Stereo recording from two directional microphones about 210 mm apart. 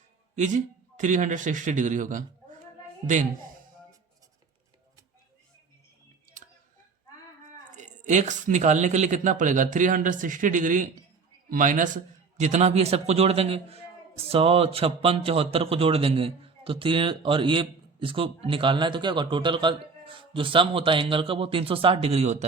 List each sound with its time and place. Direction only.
0.3 s speech: 35° right (ahead or behind)
7.8 s a man's voice: 35° right (ahead or behind)